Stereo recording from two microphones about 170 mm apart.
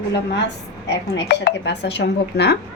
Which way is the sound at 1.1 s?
85° left.